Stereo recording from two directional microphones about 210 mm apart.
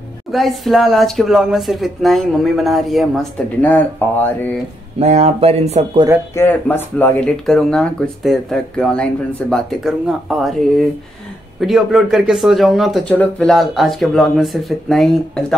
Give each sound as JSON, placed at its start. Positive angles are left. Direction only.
{"t": 0.3, "sound": "speech", "side_deg": 0}
{"t": 4.9, "sound": "speech", "side_deg": -30}
{"t": 6.3, "sound": "speech", "side_deg": 10}
{"t": 11.6, "sound": "speech", "side_deg": 0}